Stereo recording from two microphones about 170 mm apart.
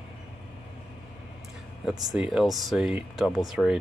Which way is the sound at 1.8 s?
5° right (ahead or behind).